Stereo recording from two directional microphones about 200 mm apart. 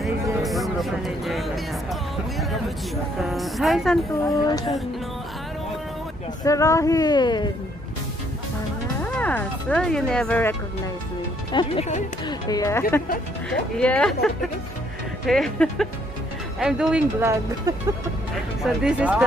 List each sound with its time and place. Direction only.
0.0 s music: centre (ahead or behind)
3.2 s a woman's voice: centre (ahead or behind)
4.3 s speech: 20° left (ahead or behind)
6.4 s speech: 15° left (ahead or behind)
9.0 s speech: 10° left (ahead or behind)
11.5 s speech: 25° left (ahead or behind)
13.5 s speech: 5° left (ahead or behind)
17.7 s music: 20° right (ahead or behind)
18.6 s speech: 5° right (ahead or behind)